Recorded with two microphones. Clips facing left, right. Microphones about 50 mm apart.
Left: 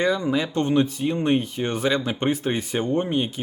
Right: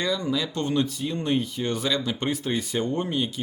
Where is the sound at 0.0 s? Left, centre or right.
Left.